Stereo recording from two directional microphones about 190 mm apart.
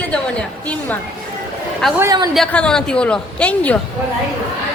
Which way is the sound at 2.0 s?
20° right (ahead or behind).